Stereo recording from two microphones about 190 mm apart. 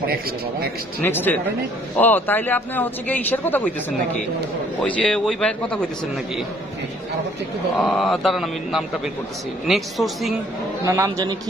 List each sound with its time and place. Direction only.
0.0 s a man's voice: 55° right (ahead or behind)
1.0 s a man's voice: 10° left (ahead or behind)
4.8 s speech: 5° left (ahead or behind)
7.9 s speech: centre (ahead or behind)
10.9 s a man's voice: 15° right (ahead or behind)